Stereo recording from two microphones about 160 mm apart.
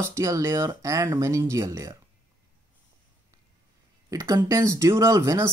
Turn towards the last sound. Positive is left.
turn(degrees=-20)  # may be behind; listen again after turning